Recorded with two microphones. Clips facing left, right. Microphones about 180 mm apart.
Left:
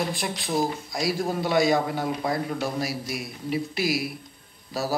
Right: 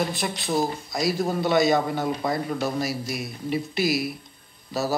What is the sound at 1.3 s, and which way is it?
A man's voice, 10° left (ahead or behind).